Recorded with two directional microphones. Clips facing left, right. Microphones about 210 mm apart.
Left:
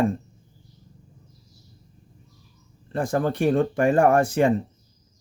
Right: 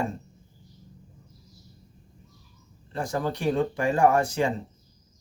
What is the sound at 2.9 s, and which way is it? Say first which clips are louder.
Speech: left 5 dB; 55° left (ahead or behind).